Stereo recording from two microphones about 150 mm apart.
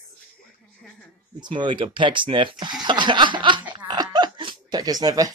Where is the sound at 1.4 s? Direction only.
30° right (ahead or behind).